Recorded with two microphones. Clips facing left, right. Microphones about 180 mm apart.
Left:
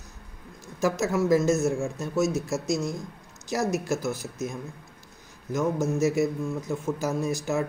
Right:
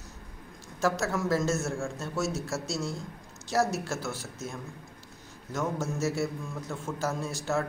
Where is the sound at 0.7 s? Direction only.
15° left (ahead or behind).